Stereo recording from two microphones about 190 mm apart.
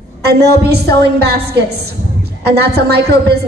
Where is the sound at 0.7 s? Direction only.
60° right (ahead or behind).